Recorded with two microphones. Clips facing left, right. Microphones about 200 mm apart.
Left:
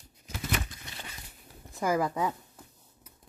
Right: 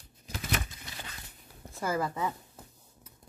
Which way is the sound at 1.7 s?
15° left (ahead or behind).